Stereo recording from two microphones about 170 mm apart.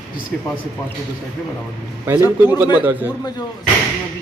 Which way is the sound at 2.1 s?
10° right (ahead or behind).